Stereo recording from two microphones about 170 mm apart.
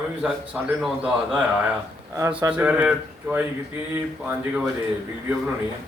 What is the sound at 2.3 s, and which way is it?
Speech, 10° right (ahead or behind).